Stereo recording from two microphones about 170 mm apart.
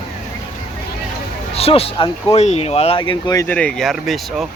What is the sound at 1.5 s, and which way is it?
Speech, 35° left (ahead or behind).